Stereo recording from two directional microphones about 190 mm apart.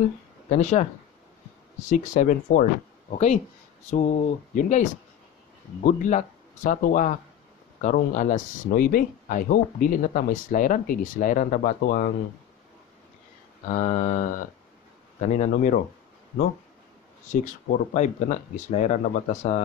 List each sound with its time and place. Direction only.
0.5 s speech: 35° left (ahead or behind)
13.7 s speech: 40° left (ahead or behind)
17.3 s speech: 45° left (ahead or behind)